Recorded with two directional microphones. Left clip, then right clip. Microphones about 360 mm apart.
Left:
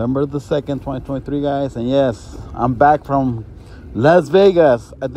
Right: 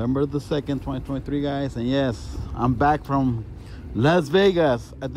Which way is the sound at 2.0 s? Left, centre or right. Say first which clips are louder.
Left 8 dB; centre.